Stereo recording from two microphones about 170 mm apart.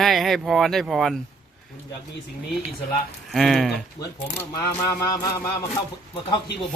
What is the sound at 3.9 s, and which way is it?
Speech, 20° left (ahead or behind).